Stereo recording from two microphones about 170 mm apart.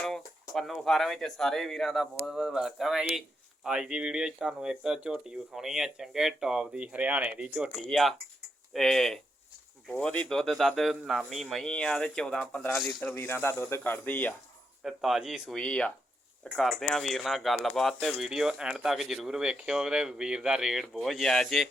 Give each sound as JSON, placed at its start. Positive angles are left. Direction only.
{"t": 0.5, "sound": "speech", "side_deg": 0}
{"t": 14.8, "sound": "speech", "side_deg": 0}